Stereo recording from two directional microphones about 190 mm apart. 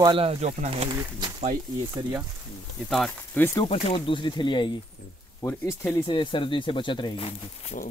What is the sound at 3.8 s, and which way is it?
Speech, 30° left (ahead or behind).